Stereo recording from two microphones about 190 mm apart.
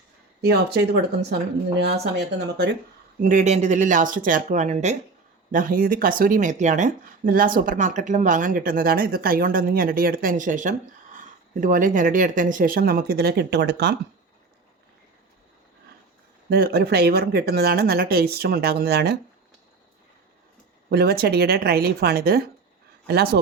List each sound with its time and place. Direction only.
0.4 s speech: 55° right (ahead or behind)
1.9 s speech: 60° right (ahead or behind)
3.2 s speech: 45° right (ahead or behind); by 13.9 s 60° right (ahead or behind)
16.5 s speech: 55° right (ahead or behind)
20.9 s speech: 55° right (ahead or behind)